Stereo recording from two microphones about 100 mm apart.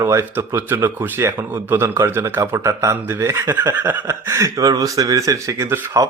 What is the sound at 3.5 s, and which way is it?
Speech, 20° right (ahead or behind).